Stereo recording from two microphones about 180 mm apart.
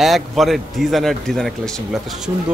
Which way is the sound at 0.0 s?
Centre (ahead or behind).